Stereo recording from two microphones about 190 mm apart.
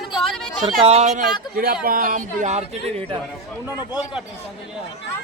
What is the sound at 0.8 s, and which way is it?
Speech, 35° right (ahead or behind).